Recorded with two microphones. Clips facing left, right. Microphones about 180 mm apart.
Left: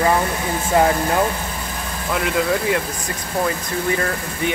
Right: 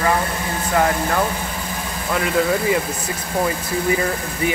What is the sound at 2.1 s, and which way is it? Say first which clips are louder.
Speech: right 1 dB; centre (ahead or behind).